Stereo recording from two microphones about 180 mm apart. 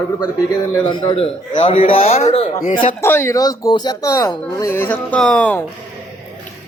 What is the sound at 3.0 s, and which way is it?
Speech, 15° left (ahead or behind).